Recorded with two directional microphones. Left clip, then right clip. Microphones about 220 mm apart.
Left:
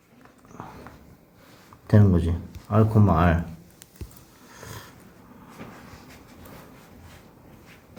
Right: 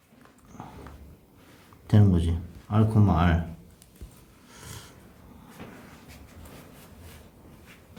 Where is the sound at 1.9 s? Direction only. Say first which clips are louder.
Left 4 dB; 5° right (ahead or behind).